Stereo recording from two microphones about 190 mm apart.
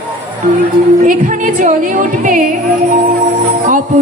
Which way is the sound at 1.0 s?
45° right (ahead or behind).